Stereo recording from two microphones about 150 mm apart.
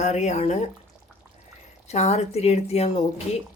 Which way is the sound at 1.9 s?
50° left (ahead or behind).